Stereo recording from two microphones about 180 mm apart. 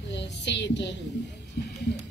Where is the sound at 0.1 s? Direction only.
75° left (ahead or behind).